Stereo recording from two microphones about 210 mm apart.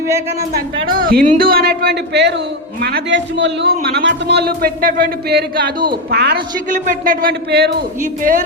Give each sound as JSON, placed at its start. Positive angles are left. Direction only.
{"t": 0.9, "sound": "a man's voice", "side_deg": -45}